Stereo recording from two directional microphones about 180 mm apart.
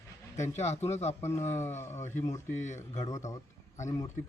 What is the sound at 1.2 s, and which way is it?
Speech, 15° left (ahead or behind).